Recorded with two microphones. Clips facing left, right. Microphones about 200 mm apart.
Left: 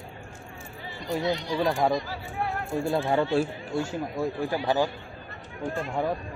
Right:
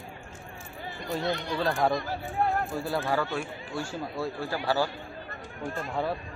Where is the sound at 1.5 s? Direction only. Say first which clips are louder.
Left 2 dB; 15° left (ahead or behind).